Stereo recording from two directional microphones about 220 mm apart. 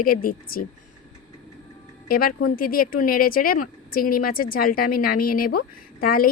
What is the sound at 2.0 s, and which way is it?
Speech, 40° left (ahead or behind).